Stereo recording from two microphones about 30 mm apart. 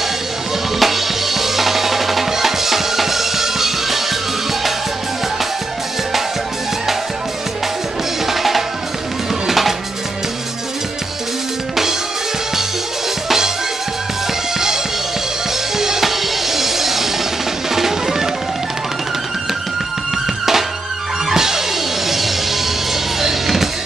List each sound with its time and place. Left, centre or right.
0.7 s drum: centre
8.3 s drum: centre
9.5 s music: centre
15.8 s music: centre
21.3 s music: centre